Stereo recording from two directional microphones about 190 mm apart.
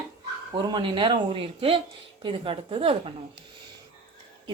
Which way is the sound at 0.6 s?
25° right (ahead or behind).